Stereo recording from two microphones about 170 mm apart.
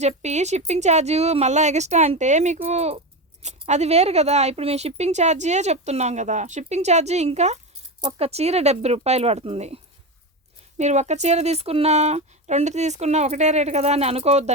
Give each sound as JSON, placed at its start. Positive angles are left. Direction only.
{"t": 0.0, "sound": "speech", "side_deg": -40}